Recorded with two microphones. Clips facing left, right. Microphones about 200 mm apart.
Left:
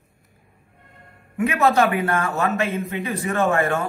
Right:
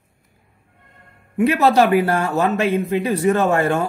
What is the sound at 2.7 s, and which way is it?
Speech, 35° right (ahead or behind).